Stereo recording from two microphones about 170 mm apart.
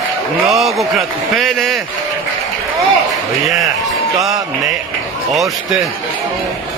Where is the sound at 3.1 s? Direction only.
Centre (ahead or behind).